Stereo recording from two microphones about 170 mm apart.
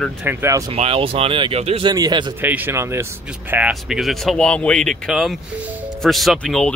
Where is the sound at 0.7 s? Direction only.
35° right (ahead or behind).